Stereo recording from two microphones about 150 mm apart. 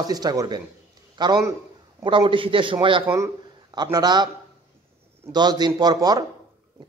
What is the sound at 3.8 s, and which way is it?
Speech, 25° right (ahead or behind).